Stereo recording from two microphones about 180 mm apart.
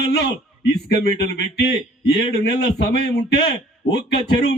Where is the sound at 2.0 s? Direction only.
65° left (ahead or behind).